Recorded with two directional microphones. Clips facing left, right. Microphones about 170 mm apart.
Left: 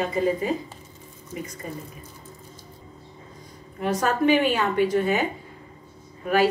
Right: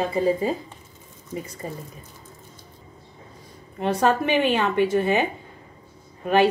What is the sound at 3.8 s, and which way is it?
Speech, 25° right (ahead or behind).